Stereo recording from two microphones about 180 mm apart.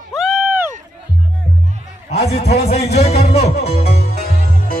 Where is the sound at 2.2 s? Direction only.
35° left (ahead or behind).